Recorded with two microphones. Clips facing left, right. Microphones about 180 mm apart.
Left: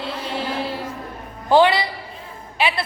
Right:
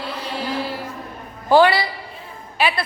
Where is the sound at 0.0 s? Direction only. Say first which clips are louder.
Left 1 dB; 25° left (ahead or behind).